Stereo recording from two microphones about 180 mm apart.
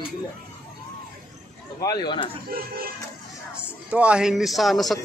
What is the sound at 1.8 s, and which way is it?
Speech, 20° left (ahead or behind).